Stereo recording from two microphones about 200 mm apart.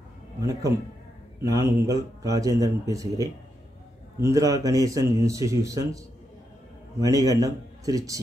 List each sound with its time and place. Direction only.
0.4 s speech: 15° right (ahead or behind)
7.0 s speech: 15° right (ahead or behind)